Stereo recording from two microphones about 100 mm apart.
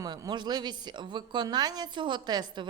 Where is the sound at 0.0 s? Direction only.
40° right (ahead or behind).